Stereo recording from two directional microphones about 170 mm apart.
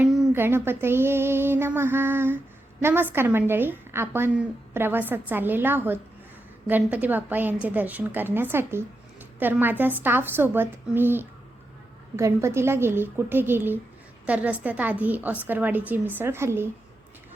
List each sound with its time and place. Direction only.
0.3 s a woman's voice: 15° right (ahead or behind)